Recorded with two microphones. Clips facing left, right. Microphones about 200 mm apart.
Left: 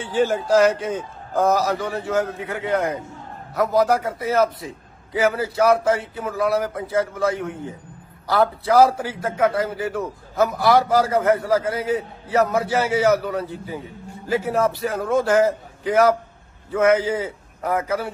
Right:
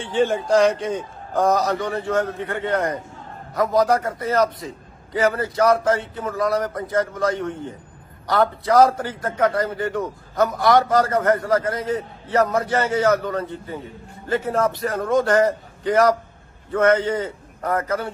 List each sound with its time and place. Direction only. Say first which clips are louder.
0.0 s a man's voice: even; 5° left (ahead or behind)